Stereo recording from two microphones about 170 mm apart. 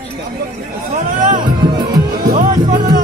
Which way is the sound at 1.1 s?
50° right (ahead or behind).